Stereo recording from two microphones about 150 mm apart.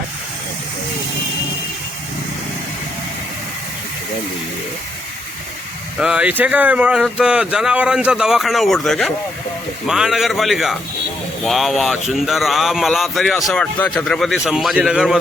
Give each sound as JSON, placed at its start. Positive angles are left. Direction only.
{"t": 6.0, "sound": "speech", "side_deg": -5}